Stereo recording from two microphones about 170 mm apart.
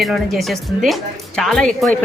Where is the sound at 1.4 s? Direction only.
5° left (ahead or behind).